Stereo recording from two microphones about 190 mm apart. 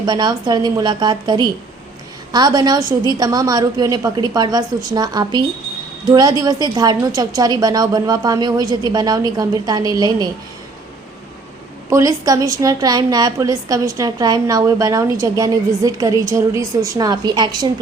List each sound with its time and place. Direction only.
0.0 s a woman's voice: 20° right (ahead or behind)
11.9 s a woman's voice: 15° right (ahead or behind)